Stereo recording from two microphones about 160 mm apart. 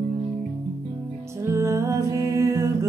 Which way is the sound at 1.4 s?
15° right (ahead or behind).